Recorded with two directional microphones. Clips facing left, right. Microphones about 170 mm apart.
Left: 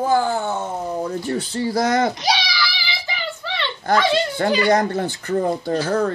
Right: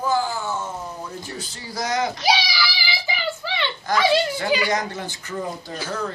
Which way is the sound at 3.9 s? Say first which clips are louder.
Left 1 dB; 60° left (ahead or behind).